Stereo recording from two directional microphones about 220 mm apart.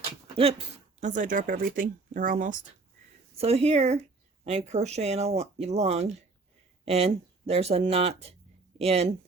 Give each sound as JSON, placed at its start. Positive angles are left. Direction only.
{"t": 0.9, "sound": "speech", "side_deg": -35}